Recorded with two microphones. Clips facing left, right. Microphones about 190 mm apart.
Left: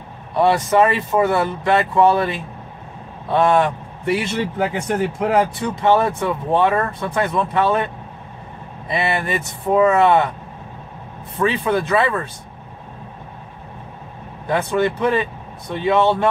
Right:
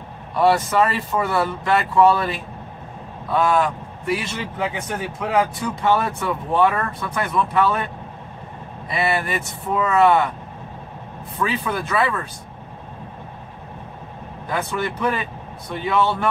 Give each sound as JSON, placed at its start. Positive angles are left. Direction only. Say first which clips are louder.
{"t": 0.4, "sound": "speech", "louder": "left 2 dB", "side_deg": 20}
{"t": 4.4, "sound": "speech", "louder": "left 5 dB", "side_deg": 35}
{"t": 11.3, "sound": "speech", "louder": "left 5 dB", "side_deg": 25}
{"t": 14.5, "sound": "speech", "louder": "left 6 dB", "side_deg": 25}